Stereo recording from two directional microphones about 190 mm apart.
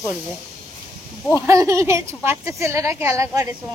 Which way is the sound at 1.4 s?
15° right (ahead or behind).